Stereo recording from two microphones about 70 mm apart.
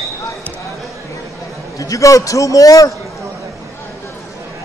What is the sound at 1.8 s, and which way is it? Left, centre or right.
A man's voice, left.